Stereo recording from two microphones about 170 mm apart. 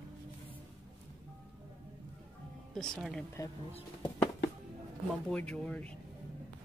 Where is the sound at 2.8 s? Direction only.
Centre (ahead or behind).